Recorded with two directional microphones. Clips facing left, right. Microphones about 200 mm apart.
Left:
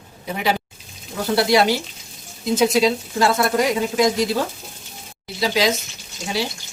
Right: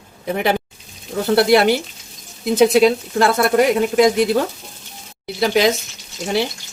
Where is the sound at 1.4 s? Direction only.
60° right (ahead or behind).